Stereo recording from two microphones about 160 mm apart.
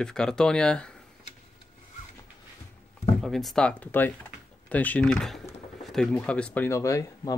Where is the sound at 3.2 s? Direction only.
Centre (ahead or behind).